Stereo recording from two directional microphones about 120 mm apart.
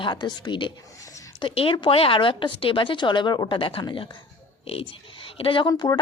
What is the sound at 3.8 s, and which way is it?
Speech, 35° left (ahead or behind).